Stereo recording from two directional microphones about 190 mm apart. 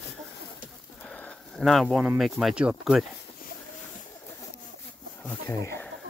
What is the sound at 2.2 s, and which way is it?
Speech, centre (ahead or behind).